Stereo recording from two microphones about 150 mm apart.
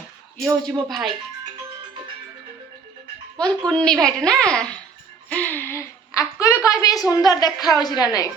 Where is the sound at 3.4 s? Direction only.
5° left (ahead or behind); by 8.3 s 25° left (ahead or behind).